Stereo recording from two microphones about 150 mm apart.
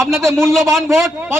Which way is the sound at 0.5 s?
Centre (ahead or behind).